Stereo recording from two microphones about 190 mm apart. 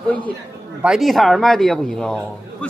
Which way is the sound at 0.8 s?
Centre (ahead or behind).